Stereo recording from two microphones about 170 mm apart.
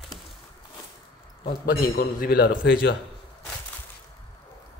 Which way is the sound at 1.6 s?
55° left (ahead or behind).